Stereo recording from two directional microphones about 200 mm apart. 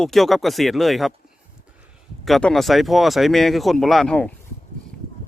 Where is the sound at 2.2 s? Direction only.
Centre (ahead or behind).